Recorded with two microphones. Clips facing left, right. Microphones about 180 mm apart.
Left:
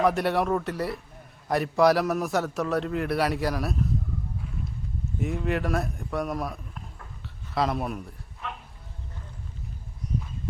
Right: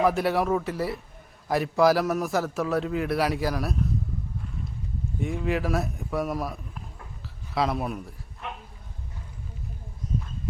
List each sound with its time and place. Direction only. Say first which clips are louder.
0.0 s a man's voice: even; centre (ahead or behind)
5.2 s a man's voice: even; centre (ahead or behind)
10.0 s a sound: right 1 dB; 65° left (ahead or behind)